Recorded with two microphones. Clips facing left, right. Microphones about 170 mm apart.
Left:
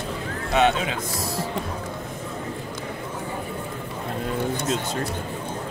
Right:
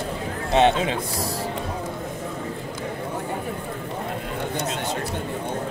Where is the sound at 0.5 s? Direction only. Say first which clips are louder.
Right 2 dB; 30° right (ahead or behind).